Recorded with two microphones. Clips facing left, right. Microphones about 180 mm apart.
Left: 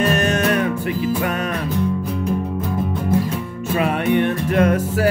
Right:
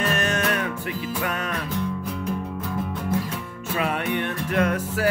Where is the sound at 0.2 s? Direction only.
20° left (ahead or behind).